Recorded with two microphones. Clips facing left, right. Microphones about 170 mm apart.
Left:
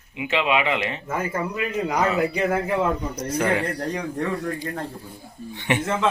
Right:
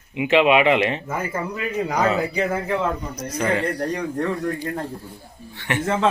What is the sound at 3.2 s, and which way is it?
Speech, 15° left (ahead or behind).